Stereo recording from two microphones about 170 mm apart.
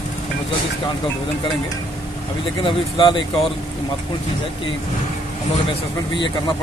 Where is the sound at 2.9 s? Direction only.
30° left (ahead or behind).